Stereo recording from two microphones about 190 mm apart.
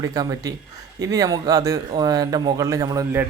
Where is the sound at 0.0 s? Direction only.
15° right (ahead or behind).